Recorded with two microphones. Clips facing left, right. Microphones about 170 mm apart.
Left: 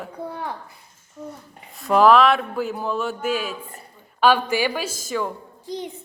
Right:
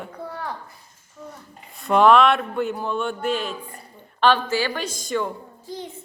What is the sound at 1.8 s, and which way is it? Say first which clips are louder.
A woman's voice: even; centre (ahead or behind).